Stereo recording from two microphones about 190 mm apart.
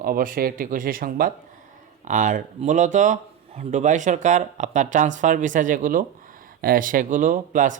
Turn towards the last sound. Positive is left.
turn(degrees=-45)  # may be behind; listen again after turning